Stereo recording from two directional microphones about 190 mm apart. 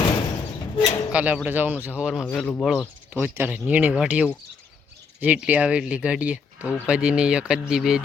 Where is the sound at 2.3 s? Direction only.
10° left (ahead or behind).